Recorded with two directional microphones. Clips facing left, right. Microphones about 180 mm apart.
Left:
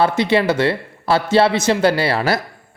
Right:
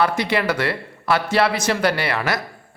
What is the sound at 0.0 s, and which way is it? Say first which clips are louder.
Speech: left 4 dB; 25° left (ahead or behind).